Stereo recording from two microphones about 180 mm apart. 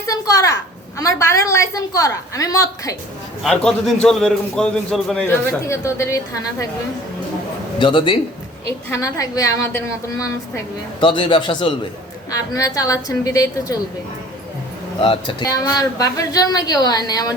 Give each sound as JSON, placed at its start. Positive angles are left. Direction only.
{"t": 0.1, "sound": "a woman's voice", "side_deg": 20}
{"t": 3.4, "sound": "a man's voice", "side_deg": 5}
{"t": 5.5, "sound": "a woman's voice", "side_deg": 15}
{"t": 7.8, "sound": "speech", "side_deg": 30}
{"t": 8.6, "sound": "a woman's voice", "side_deg": 15}
{"t": 11.0, "sound": "speech", "side_deg": 25}
{"t": 15.0, "sound": "speech", "side_deg": 30}